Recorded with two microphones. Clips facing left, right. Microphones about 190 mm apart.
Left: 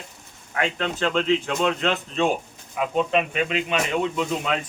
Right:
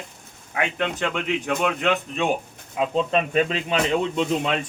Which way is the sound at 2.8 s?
35° right (ahead or behind).